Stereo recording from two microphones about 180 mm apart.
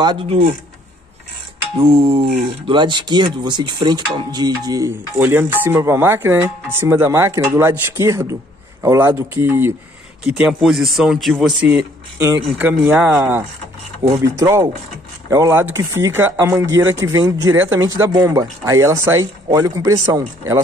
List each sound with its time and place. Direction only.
0.0 s speech: 25° right (ahead or behind)
1.8 s a sound: 30° right (ahead or behind)
2.4 s speech: 25° right (ahead or behind)